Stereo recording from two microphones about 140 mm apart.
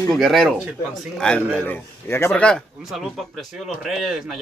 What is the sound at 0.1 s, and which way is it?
Speech, centre (ahead or behind).